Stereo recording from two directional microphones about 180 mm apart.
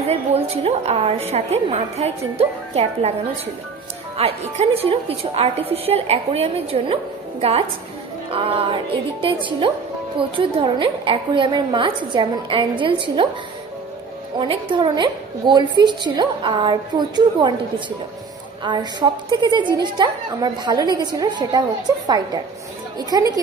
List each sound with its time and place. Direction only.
0.1 s a woman's voice: 35° right (ahead or behind)
4.2 s a woman's voice: 35° right (ahead or behind)
14.4 s a woman's voice: 30° right (ahead or behind)